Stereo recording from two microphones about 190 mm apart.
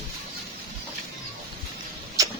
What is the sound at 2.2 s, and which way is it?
Tick-tock, 20° right (ahead or behind).